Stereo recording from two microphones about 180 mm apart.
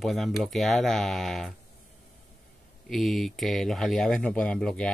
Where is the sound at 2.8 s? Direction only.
Centre (ahead or behind).